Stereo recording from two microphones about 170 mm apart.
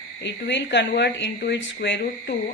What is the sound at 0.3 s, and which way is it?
Speech, 90° left.